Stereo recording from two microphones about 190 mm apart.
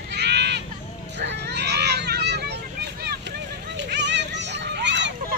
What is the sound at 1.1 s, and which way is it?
Vehicle, 60° right (ahead or behind).